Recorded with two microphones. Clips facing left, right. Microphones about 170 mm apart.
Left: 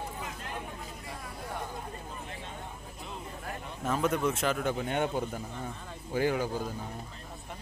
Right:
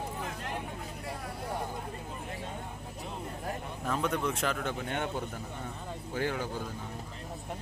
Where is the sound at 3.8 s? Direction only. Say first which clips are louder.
Left 3 dB; 5° left (ahead or behind).